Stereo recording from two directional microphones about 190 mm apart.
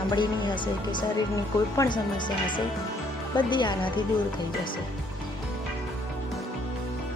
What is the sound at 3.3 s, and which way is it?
Speech, 25° left (ahead or behind).